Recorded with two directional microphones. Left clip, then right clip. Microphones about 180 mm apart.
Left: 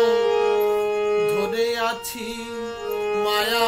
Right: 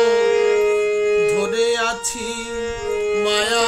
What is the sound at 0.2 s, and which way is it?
Music, 50° right (ahead or behind).